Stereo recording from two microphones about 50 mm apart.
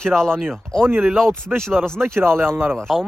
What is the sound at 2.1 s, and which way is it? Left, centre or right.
Speech, right.